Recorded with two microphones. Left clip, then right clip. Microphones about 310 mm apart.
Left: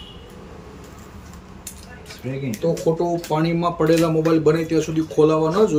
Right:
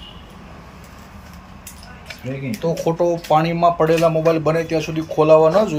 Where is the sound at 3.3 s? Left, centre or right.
Centre.